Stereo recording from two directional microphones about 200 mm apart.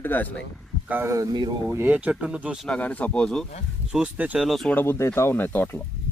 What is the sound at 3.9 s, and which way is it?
A man's voice, 5° right (ahead or behind).